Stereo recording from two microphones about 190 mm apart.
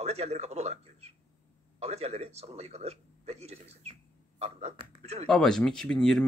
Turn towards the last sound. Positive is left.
turn(degrees=5)  # may be behind; listen again after turning